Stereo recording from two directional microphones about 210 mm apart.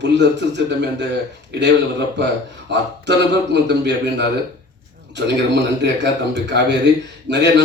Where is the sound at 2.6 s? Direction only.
55° right (ahead or behind).